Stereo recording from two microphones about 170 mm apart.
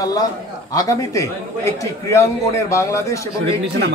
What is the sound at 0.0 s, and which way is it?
A man's voice, 20° left (ahead or behind).